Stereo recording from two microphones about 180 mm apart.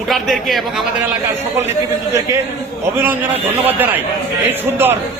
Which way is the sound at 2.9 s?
10° right (ahead or behind).